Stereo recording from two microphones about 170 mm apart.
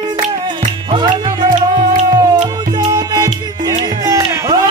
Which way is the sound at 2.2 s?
25° right (ahead or behind).